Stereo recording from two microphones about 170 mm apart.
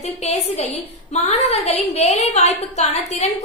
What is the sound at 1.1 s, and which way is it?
A woman's voice, 40° left (ahead or behind).